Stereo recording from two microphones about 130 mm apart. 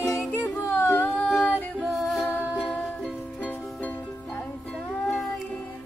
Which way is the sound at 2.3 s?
10° left (ahead or behind).